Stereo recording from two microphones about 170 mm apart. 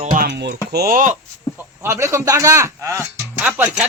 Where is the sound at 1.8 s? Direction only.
15° right (ahead or behind).